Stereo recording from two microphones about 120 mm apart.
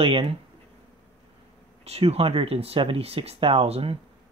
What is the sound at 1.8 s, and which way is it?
Speech, 60° right (ahead or behind).